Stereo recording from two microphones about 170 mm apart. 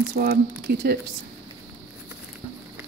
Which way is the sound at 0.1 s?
65° right (ahead or behind).